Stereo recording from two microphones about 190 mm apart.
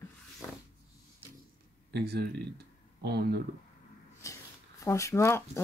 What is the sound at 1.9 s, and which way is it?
Speech, 60° right (ahead or behind).